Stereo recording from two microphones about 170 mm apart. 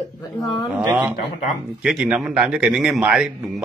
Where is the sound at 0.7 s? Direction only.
10° right (ahead or behind).